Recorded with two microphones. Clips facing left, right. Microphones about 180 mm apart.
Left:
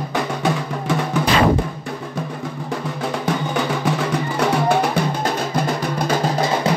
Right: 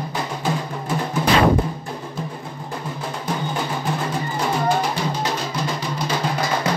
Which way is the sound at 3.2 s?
80° left.